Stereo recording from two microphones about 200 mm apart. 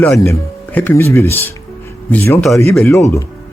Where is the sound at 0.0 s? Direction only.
10° left (ahead or behind).